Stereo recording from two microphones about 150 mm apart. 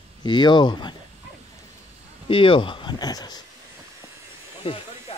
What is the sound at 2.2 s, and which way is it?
Speech, 35° left (ahead or behind).